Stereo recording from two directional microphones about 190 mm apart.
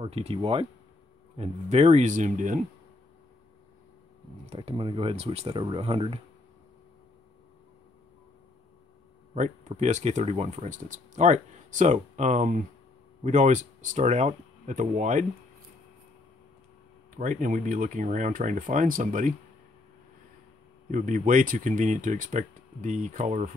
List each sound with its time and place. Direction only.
0.0 s speech: 30° right (ahead or behind)
4.5 s speech: 30° right (ahead or behind)
9.3 s speech: 40° right (ahead or behind)
17.2 s speech: 45° right (ahead or behind)
20.9 s speech: 40° right (ahead or behind)